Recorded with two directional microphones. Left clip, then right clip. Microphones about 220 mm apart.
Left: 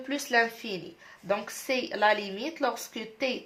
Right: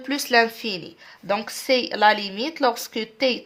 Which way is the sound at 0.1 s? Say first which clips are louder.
Right 7 dB; 50° right (ahead or behind).